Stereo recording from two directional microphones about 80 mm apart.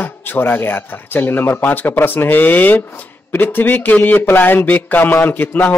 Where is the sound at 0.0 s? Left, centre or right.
Left.